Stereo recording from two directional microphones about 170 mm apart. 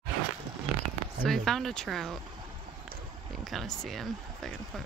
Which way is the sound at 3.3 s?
Centre (ahead or behind).